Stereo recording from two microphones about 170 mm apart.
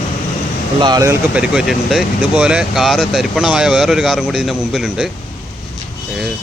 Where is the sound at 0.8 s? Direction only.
20° right (ahead or behind).